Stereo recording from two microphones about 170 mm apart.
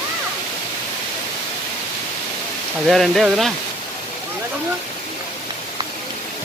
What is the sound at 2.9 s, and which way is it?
Speech, centre (ahead or behind).